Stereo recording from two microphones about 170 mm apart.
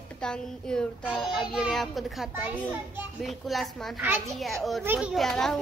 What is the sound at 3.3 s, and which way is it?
A woman's voice, centre (ahead or behind).